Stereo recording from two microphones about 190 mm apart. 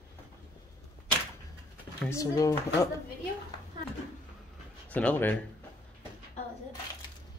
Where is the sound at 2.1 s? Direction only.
15° left (ahead or behind).